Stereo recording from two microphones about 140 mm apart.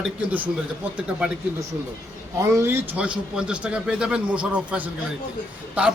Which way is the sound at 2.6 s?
15° right (ahead or behind).